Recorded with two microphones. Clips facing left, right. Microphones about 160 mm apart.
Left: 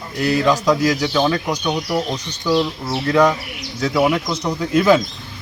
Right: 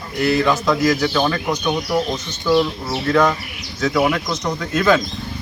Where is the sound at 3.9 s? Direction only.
5° left (ahead or behind).